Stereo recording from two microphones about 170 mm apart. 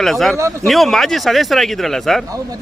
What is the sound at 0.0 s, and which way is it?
Speech, centre (ahead or behind).